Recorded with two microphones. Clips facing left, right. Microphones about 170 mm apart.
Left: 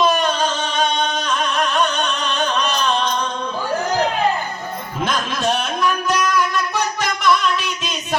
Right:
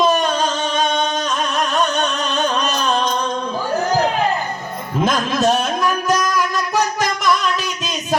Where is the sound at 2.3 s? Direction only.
45° right (ahead or behind).